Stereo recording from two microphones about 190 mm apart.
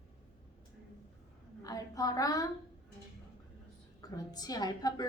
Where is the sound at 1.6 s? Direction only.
20° left (ahead or behind).